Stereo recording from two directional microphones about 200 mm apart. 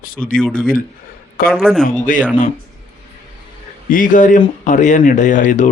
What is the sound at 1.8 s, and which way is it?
Speech, 40° left (ahead or behind).